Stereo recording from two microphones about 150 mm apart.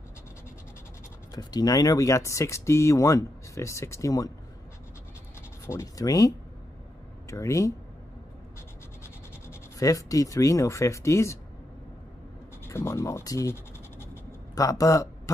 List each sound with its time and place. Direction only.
1.3 s speech: 25° left (ahead or behind)
5.7 s speech: 20° left (ahead or behind)
9.0 s rub: 20° left (ahead or behind)
12.6 s scratch: 15° left (ahead or behind)